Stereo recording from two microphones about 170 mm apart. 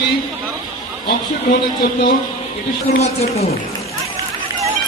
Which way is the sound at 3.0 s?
40° left (ahead or behind).